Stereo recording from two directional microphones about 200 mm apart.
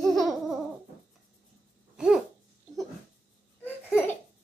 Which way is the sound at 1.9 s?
5° right (ahead or behind).